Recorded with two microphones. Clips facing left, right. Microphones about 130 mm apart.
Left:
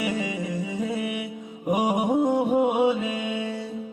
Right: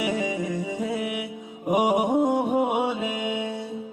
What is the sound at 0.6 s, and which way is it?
Music, 15° right (ahead or behind).